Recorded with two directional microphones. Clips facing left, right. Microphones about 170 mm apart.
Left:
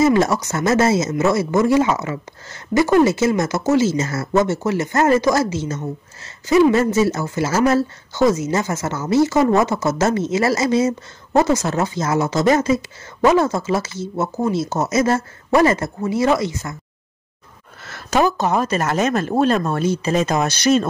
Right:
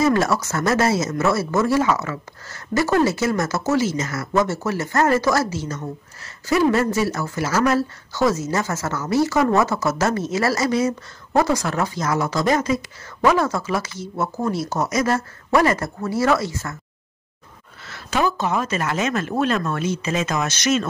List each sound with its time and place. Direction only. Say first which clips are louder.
0.0 s speech: left 3 dB; 20° left (ahead or behind)
17.8 s speech: left 4 dB; 45° left (ahead or behind)